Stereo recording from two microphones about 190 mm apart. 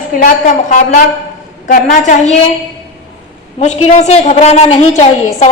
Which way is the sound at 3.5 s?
35° left (ahead or behind).